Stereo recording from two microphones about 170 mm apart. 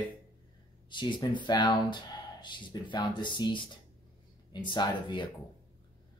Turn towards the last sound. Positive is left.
turn(degrees=25)  # may be behind; listen again after turning